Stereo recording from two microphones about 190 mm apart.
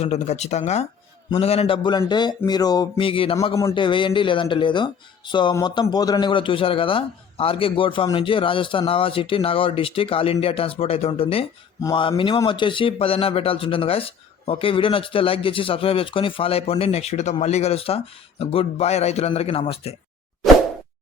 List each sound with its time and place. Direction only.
0.0 s speech: 35° left (ahead or behind)
3.5 s speech: 15° left (ahead or behind)